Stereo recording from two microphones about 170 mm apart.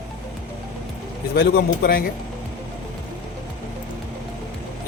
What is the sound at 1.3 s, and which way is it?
Speech, 65° left (ahead or behind).